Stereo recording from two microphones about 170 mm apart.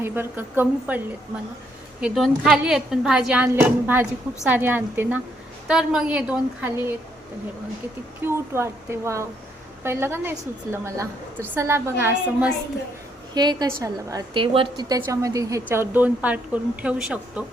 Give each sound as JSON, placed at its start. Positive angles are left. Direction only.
{"t": 0.0, "sound": "a woman's voice", "side_deg": -10}
{"t": 8.2, "sound": "a woman's voice", "side_deg": -15}
{"t": 13.3, "sound": "a woman's voice", "side_deg": -25}